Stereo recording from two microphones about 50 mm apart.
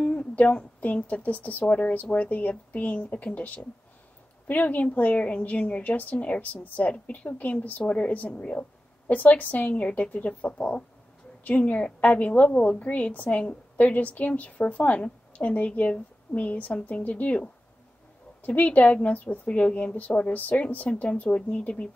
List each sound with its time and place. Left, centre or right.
0.0 s a woman's voice: left